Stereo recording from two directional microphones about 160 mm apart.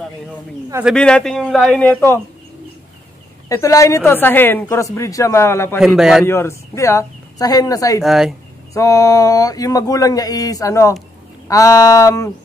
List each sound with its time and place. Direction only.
0.9 s a man's voice: 5° left (ahead or behind)
3.4 s speech: 20° left (ahead or behind)
5.8 s a man's voice: centre (ahead or behind)
6.2 s speech: 15° left (ahead or behind)
8.0 s a man's voice: centre (ahead or behind)
8.7 s speech: 20° left (ahead or behind)